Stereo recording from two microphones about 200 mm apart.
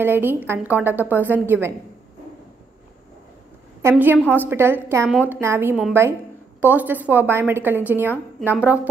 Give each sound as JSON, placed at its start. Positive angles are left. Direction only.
{"t": 0.0, "sound": "a woman's voice", "side_deg": -10}
{"t": 3.9, "sound": "a woman's voice", "side_deg": -5}